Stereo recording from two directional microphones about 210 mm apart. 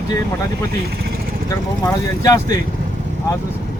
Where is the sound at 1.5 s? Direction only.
15° left (ahead or behind).